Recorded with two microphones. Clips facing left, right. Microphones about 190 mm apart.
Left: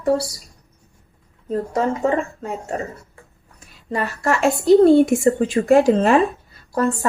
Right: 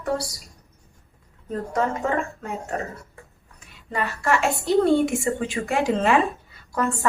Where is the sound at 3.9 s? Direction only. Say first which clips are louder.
Left 2 dB; 40° left (ahead or behind).